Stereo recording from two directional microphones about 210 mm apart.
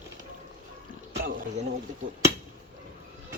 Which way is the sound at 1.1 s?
45° right (ahead or behind).